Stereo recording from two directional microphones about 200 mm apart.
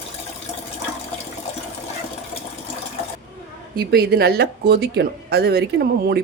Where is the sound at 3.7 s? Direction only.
50° right (ahead or behind).